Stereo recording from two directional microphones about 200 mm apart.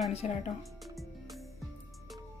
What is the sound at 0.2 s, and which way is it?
Speech, 35° left (ahead or behind).